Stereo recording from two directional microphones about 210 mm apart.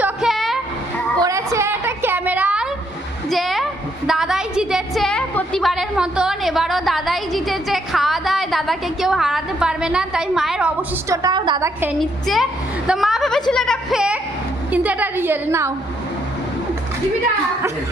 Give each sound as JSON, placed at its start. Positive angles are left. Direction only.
{"t": 0.0, "sound": "music", "side_deg": 0}
{"t": 1.2, "sound": "a sound", "side_deg": -15}
{"t": 11.9, "sound": "a woman's voice", "side_deg": 0}